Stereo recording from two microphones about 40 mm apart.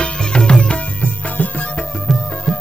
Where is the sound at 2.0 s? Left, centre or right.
Centre.